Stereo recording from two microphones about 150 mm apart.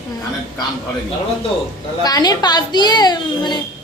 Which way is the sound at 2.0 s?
25° left (ahead or behind).